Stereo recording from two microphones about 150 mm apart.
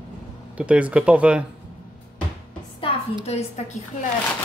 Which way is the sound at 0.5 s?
10° right (ahead or behind).